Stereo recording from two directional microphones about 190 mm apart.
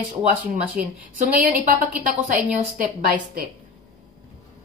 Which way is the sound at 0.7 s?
45° right (ahead or behind).